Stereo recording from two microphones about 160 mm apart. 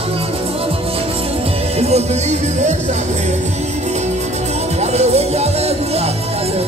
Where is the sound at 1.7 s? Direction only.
40° right (ahead or behind).